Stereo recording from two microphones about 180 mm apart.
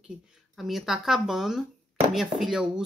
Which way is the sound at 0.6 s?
Centre (ahead or behind).